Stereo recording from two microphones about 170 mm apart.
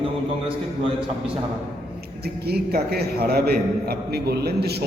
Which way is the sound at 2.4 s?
70° right (ahead or behind).